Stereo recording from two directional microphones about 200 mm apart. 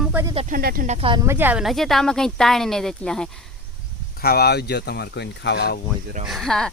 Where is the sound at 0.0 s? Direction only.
10° right (ahead or behind).